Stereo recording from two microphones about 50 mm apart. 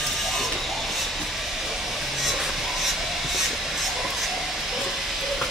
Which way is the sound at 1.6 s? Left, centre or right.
Centre.